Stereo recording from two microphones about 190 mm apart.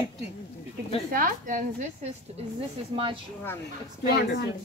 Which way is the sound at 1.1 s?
45° right (ahead or behind).